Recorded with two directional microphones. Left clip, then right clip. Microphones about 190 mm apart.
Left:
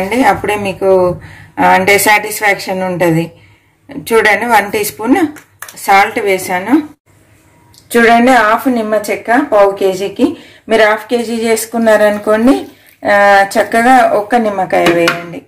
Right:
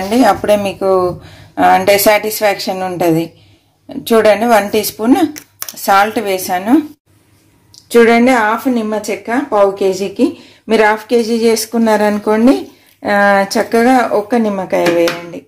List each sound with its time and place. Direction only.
0.3 s speech: 30° right (ahead or behind)
7.9 s speech: 35° right (ahead or behind)